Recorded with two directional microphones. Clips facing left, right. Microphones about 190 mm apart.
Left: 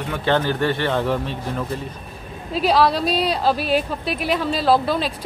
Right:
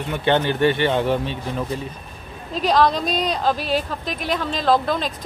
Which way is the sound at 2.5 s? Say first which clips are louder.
Left 1 dB; 5° left (ahead or behind).